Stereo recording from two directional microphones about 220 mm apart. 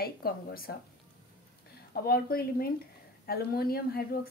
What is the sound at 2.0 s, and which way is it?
Speech, 45° left (ahead or behind).